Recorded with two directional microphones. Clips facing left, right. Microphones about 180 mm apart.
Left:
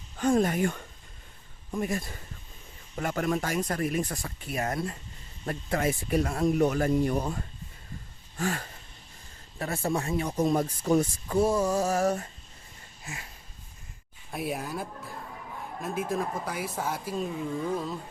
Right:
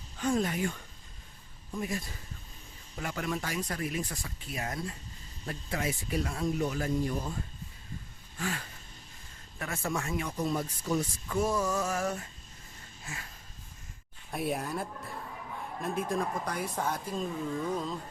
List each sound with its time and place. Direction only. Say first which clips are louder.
0.2 s speech: left 5 dB; 50° left (ahead or behind)
8.4 s speech: left 5 dB; 45° left (ahead or behind)
9.6 s speech: left 5 dB; 35° left (ahead or behind); by 11.0 s 50° left (ahead or behind)
11.3 s speech: left 4 dB; 30° left (ahead or behind)
14.3 s speech: even; centre (ahead or behind)